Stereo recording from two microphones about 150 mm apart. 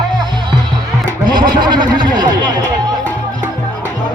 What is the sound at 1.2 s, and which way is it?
Music, 70° right (ahead or behind).